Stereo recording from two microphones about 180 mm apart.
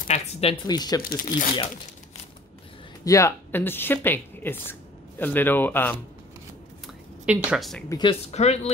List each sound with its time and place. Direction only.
0.1 s speech: 35° left (ahead or behind)
0.7 s speech: 20° left (ahead or behind)
1.0 s speech: 45° left (ahead or behind)
3.1 s speech: 15° left (ahead or behind)
7.2 s speech: 5° right (ahead or behind)
7.9 s speech: 30° left (ahead or behind)